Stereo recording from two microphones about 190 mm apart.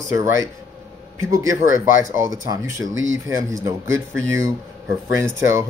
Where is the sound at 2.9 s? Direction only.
90° right.